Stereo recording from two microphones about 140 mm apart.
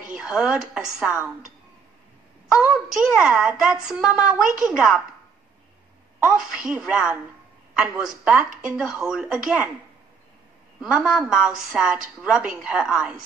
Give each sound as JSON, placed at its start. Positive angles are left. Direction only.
{"t": 0.1, "sound": "a woman's voice", "side_deg": -5}
{"t": 2.9, "sound": "a woman's voice", "side_deg": -5}
{"t": 6.1, "sound": "a woman's voice", "side_deg": -10}
{"t": 10.8, "sound": "a woman's voice", "side_deg": -5}